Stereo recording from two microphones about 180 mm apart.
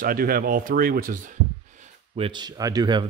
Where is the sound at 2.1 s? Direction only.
30° right (ahead or behind).